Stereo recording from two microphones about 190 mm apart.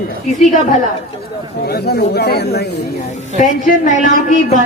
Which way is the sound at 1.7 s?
55° left (ahead or behind).